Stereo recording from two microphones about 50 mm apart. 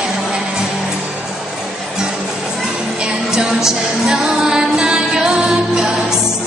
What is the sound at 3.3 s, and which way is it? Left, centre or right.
Music, centre.